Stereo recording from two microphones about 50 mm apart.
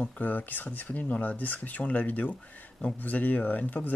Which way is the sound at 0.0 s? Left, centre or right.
Left.